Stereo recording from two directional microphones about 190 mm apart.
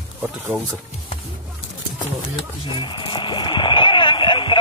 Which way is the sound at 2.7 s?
25° left (ahead or behind).